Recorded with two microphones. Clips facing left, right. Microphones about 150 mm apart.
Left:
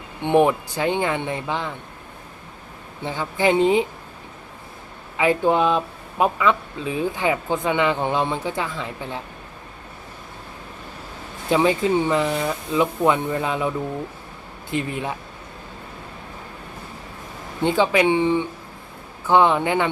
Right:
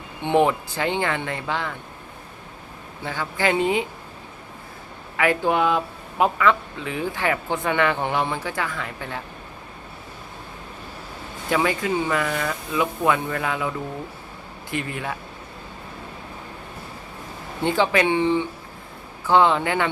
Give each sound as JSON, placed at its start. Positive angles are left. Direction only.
{"t": 0.2, "sound": "speech", "side_deg": 15}
{"t": 3.0, "sound": "speech", "side_deg": 20}
{"t": 5.1, "sound": "speech", "side_deg": 20}
{"t": 11.5, "sound": "speech", "side_deg": 20}
{"t": 17.6, "sound": "speech", "side_deg": 15}